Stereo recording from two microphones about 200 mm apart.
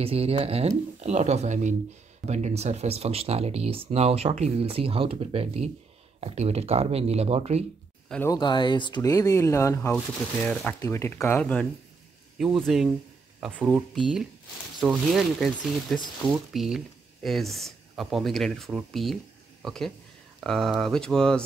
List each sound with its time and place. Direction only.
0.0 s speech: 30° right (ahead or behind)
8.1 s speech: 10° left (ahead or behind)
8.4 s speech: 20° left (ahead or behind)
9.9 s speech: 5° left (ahead or behind)
12.6 s speech: centre (ahead or behind)